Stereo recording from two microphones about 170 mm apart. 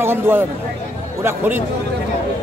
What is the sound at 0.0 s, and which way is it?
Speech, 15° right (ahead or behind).